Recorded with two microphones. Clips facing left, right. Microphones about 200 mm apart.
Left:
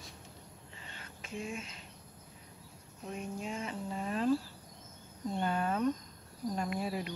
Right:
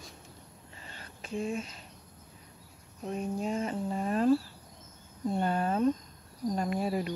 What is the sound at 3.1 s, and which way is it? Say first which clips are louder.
Speech: right 7 dB; 40° right (ahead or behind).